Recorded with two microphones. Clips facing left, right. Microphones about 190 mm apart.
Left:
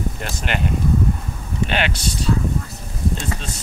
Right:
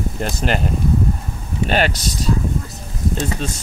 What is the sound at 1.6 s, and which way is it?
Speech, 40° right (ahead or behind).